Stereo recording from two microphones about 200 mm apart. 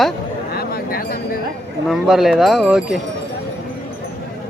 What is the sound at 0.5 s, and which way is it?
Speech, 50° left (ahead or behind).